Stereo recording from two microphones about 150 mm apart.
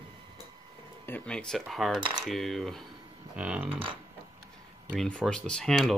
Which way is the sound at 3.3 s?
10° right (ahead or behind).